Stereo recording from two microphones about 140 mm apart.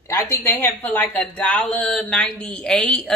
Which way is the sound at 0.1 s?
15° left (ahead or behind).